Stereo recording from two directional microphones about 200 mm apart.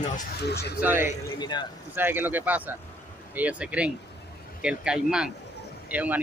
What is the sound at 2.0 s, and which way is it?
Speech, 10° right (ahead or behind).